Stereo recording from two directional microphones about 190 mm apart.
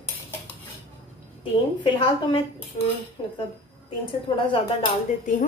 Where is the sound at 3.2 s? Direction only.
30° left (ahead or behind).